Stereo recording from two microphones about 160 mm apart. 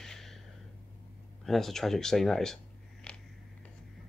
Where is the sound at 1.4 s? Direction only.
Centre (ahead or behind).